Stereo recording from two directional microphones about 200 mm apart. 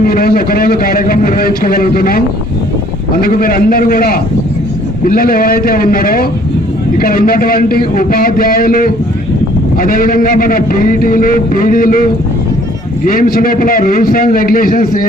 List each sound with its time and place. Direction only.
0.0 s a man's voice: 45° left (ahead or behind)
13.1 s a man's voice: 45° left (ahead or behind)